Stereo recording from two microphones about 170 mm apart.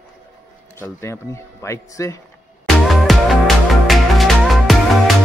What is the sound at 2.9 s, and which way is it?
Music, centre (ahead or behind).